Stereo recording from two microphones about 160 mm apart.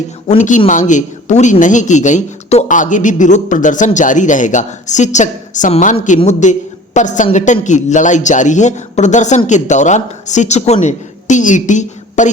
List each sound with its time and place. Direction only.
0.3 s a man's voice: 50° left (ahead or behind)